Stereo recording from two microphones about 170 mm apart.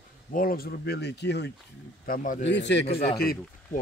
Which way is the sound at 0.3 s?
55° left (ahead or behind).